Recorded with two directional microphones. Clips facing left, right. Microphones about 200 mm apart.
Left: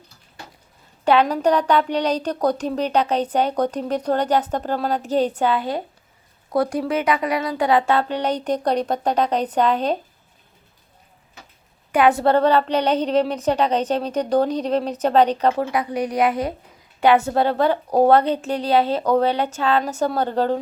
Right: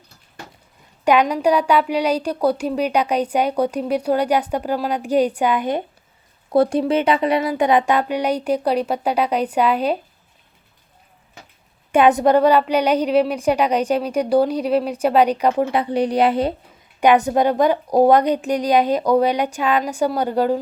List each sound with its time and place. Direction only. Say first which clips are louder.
1.0 s a woman's voice: right 1 dB; 15° right (ahead or behind)
11.9 s a woman's voice: right 2 dB; 20° right (ahead or behind)
15.7 s a woman's voice: right 4 dB; 30° right (ahead or behind)
17.0 s a woman's voice: right 2 dB; 15° right (ahead or behind)